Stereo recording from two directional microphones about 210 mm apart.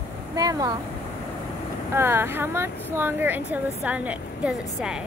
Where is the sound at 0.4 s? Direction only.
15° right (ahead or behind).